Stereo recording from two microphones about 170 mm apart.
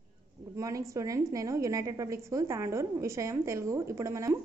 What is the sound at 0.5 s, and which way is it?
A woman's voice, 20° right (ahead or behind).